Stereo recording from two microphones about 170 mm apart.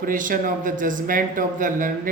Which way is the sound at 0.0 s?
50° right (ahead or behind).